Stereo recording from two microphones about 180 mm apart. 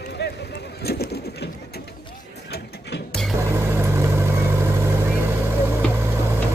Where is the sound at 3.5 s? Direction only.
15° right (ahead or behind).